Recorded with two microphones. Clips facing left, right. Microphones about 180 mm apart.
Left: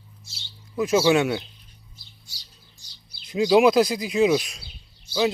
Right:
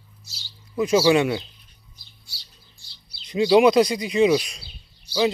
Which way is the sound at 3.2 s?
Centre (ahead or behind).